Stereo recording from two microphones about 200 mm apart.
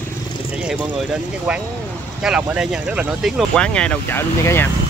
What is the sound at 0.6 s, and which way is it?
Speech, 5° right (ahead or behind).